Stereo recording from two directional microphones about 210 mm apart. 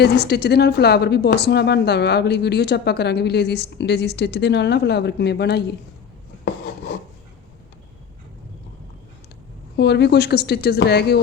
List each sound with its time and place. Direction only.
0.0 s speech: 50° left (ahead or behind)
9.7 s speech: 55° left (ahead or behind)